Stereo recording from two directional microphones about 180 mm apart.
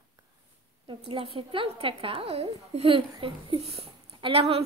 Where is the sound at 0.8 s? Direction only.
30° right (ahead or behind).